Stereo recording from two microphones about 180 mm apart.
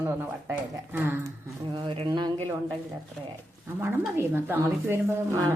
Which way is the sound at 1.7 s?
30° right (ahead or behind).